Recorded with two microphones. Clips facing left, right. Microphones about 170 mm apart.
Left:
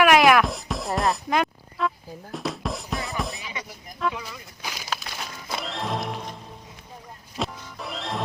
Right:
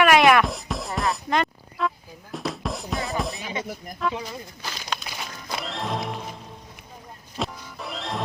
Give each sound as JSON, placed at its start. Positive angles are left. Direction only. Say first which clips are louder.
{"t": 0.0, "sound": "music", "louder": "even", "side_deg": 0}
{"t": 4.1, "sound": "speech", "louder": "right 4 dB", "side_deg": -35}
{"t": 4.6, "sound": "a sound", "louder": "left 2 dB", "side_deg": 5}
{"t": 5.0, "sound": "music", "louder": "even", "side_deg": 0}